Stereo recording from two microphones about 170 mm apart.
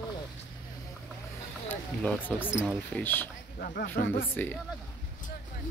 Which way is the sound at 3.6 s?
55° left (ahead or behind).